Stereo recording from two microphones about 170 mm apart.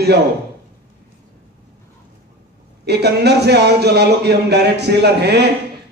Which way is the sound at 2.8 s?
75° right (ahead or behind).